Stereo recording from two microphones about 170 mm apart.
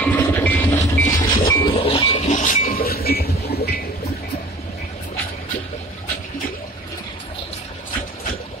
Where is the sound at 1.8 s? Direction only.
35° left (ahead or behind); by 3.8 s 70° left (ahead or behind).